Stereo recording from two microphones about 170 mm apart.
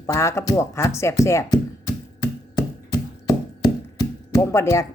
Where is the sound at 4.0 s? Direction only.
20° left (ahead or behind).